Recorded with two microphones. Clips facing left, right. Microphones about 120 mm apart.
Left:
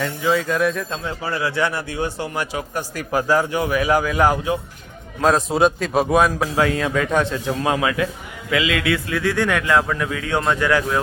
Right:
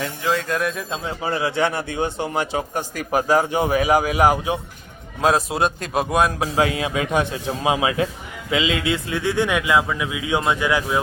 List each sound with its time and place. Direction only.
0.0 s a man's voice: centre (ahead or behind)
0.9 s speech: 20° right (ahead or behind)
5.2 s a man's voice: 5° right (ahead or behind)
6.4 s speech: 15° right (ahead or behind)